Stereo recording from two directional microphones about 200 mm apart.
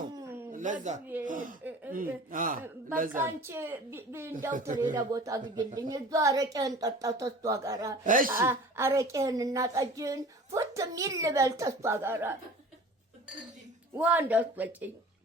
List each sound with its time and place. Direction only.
0.1 s a sound: 15° right (ahead or behind)
0.5 s speech: 40° right (ahead or behind)
3.1 s a woman's voice: 10° right (ahead or behind)
8.0 s speech: 40° right (ahead or behind)
8.3 s a woman's voice: 15° right (ahead or behind)
13.9 s a woman's voice: 10° right (ahead or behind)